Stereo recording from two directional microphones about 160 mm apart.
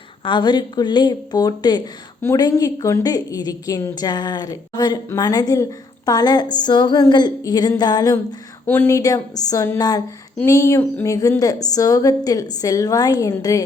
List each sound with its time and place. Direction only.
0.3 s a woman's voice: 30° left (ahead or behind)
8.6 s a woman's voice: 15° left (ahead or behind)